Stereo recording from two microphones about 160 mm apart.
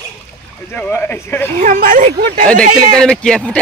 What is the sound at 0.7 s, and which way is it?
Speech, 15° left (ahead or behind).